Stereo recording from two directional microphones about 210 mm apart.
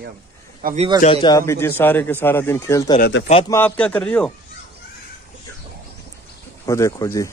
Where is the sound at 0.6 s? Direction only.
40° right (ahead or behind).